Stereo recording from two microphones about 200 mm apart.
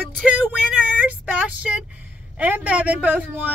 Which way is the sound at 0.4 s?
5° right (ahead or behind).